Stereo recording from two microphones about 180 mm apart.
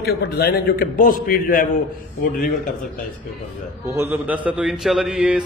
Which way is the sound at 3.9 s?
15° right (ahead or behind).